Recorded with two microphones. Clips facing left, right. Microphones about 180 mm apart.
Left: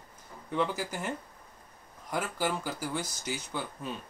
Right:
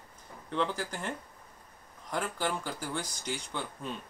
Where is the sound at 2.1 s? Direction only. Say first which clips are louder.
Left 1 dB; 10° left (ahead or behind).